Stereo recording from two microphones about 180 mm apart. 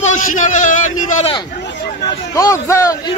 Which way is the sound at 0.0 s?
45° left (ahead or behind).